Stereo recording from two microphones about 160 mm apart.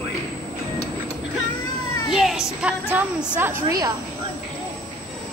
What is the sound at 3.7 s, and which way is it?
Speech, 25° right (ahead or behind).